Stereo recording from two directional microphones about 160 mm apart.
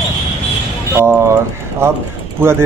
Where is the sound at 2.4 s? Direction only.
15° right (ahead or behind).